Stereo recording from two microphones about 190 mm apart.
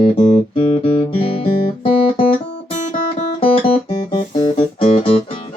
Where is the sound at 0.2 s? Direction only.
30° left (ahead or behind).